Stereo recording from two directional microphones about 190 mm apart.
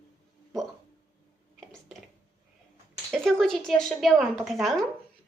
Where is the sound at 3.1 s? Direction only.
Centre (ahead or behind).